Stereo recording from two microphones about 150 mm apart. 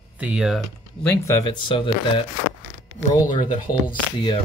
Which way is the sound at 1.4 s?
35° left (ahead or behind).